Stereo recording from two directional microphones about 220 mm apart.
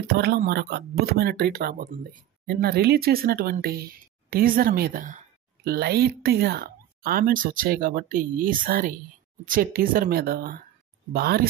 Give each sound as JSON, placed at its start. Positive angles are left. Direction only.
{"t": 0.0, "sound": "speech", "side_deg": -45}